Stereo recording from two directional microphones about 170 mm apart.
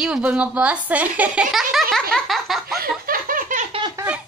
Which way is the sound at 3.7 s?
25° right (ahead or behind).